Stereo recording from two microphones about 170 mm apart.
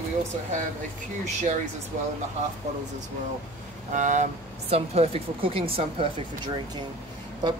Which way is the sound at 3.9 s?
45° right (ahead or behind).